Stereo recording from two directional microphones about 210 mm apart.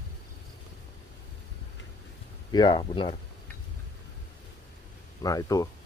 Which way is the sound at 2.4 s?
20° left (ahead or behind).